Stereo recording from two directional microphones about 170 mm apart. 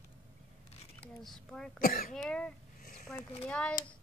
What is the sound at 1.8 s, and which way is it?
Speech, 60° left (ahead or behind).